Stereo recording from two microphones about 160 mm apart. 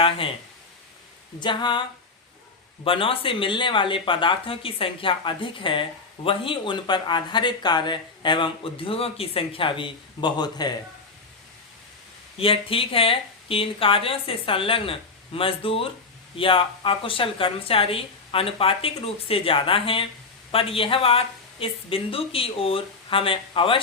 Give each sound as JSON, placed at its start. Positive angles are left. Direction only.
{"t": 1.4, "sound": "a sound", "side_deg": 30}
{"t": 2.8, "sound": "speech", "side_deg": 35}
{"t": 12.4, "sound": "speech", "side_deg": 35}